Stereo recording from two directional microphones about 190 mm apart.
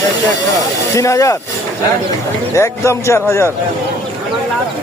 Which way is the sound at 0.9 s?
15° left (ahead or behind).